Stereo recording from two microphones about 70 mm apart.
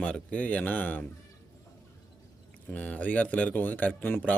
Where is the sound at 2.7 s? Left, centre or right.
Left.